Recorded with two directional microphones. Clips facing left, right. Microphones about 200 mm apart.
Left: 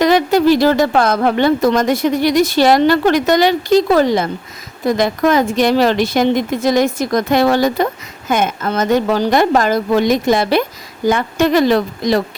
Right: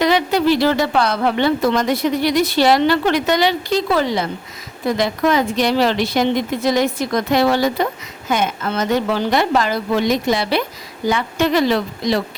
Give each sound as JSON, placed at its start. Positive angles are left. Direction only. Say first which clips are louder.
{"t": 0.0, "sound": "a woman's voice", "louder": "left 4 dB", "side_deg": 45}